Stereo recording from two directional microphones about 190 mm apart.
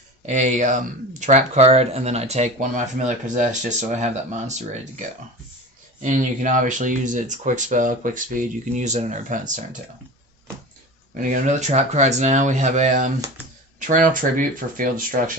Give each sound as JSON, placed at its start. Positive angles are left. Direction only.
{"t": 0.3, "sound": "speech", "side_deg": -40}
{"t": 11.1, "sound": "speech", "side_deg": -45}